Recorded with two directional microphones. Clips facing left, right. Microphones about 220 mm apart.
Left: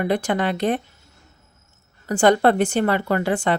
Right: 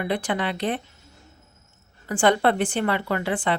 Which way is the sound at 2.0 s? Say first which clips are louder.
Left 4 dB; 40° left (ahead or behind).